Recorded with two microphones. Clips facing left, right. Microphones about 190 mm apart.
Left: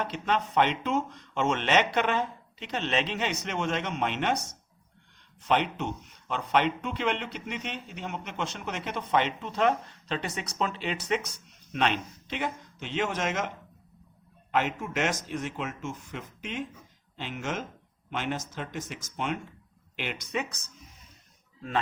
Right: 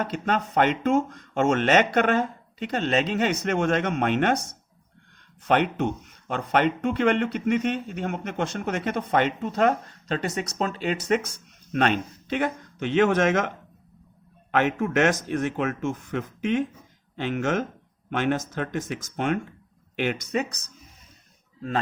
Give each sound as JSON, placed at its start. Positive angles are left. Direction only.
{"t": 0.0, "sound": "speech", "side_deg": -45}
{"t": 5.5, "sound": "speech", "side_deg": -50}
{"t": 14.5, "sound": "speech", "side_deg": -60}